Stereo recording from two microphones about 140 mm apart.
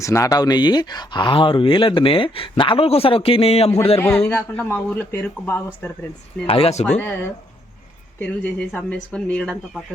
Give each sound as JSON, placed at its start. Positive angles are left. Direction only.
{"t": 0.0, "sound": "speech", "side_deg": 20}
{"t": 3.9, "sound": "speech", "side_deg": 15}
{"t": 6.5, "sound": "speech", "side_deg": 45}
{"t": 8.2, "sound": "speech", "side_deg": 10}